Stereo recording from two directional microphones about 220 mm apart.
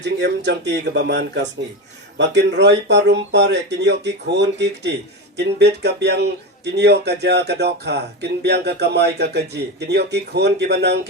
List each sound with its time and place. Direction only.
0.0 s a man's voice: 50° right (ahead or behind)